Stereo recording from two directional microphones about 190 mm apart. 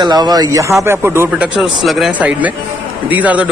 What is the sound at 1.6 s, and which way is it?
Speech, centre (ahead or behind).